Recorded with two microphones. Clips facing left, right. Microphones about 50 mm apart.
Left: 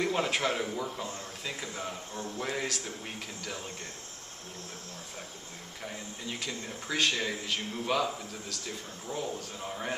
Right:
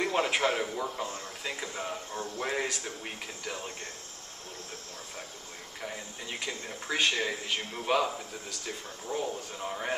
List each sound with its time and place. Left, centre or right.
0.0 s a man's voice: centre
2.1 s speech: right
5.8 s a man's voice: centre